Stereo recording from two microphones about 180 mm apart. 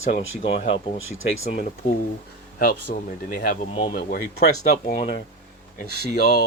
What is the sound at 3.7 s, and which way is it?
Speech, 30° left (ahead or behind).